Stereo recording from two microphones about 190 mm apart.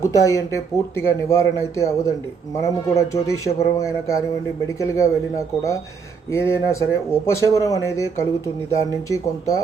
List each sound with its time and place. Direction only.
0.0 s speech: 15° left (ahead or behind)
6.3 s speech: 15° left (ahead or behind)